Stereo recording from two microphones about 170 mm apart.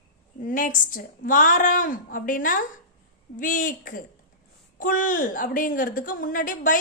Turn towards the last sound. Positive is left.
turn(degrees=55)  # may be behind; listen again after turning